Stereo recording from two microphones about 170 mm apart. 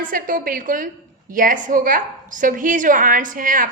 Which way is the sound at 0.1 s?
55° right (ahead or behind).